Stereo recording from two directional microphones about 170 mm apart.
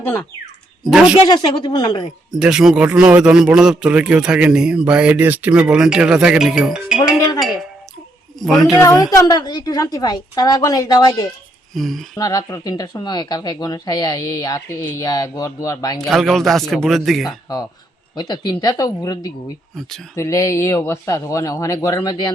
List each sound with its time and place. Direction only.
0.9 s a man's voice: 5° right (ahead or behind)
1.3 s speech: 25° left (ahead or behind)
2.3 s a man's voice: 5° right (ahead or behind)
8.8 s speech: 20° left (ahead or behind)
11.7 s a man's voice: centre (ahead or behind)
12.1 s speech: 20° left (ahead or behind)
16.0 s a man's voice: centre (ahead or behind)
17.2 s speech: 20° left (ahead or behind)